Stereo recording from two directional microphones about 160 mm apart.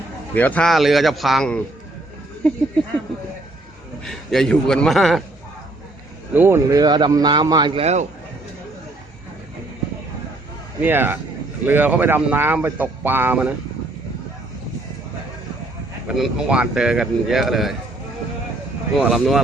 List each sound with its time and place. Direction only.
0.3 s speech: 10° left (ahead or behind)
4.0 s speech: centre (ahead or behind)
6.3 s a man's voice: 15° right (ahead or behind); by 8.0 s 40° right (ahead or behind)
10.8 s speech: 10° right (ahead or behind)
16.0 s speech: 5° right (ahead or behind)
18.9 s speech: 5° right (ahead or behind)